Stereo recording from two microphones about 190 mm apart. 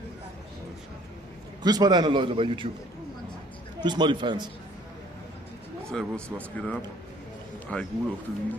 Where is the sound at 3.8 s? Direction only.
25° right (ahead or behind).